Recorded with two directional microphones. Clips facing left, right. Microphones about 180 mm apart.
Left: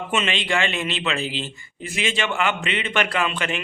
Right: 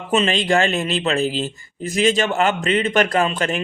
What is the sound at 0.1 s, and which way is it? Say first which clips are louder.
Speech: right 7 dB; 40° right (ahead or behind).